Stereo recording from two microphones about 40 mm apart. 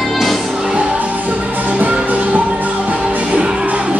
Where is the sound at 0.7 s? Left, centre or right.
Right.